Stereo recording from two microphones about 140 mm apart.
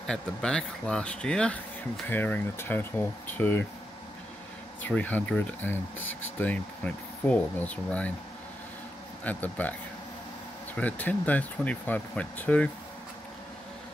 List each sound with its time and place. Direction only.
0.0 s speech: 5° left (ahead or behind)
4.8 s speech: 10° left (ahead or behind)
9.2 s speech: 10° left (ahead or behind)